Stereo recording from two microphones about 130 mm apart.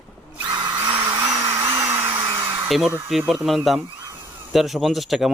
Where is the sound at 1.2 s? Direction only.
20° right (ahead or behind).